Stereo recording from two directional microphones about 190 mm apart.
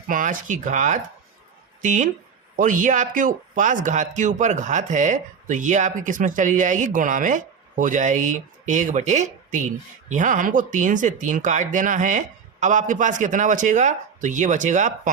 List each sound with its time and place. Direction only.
0.1 s speech: 45° right (ahead or behind)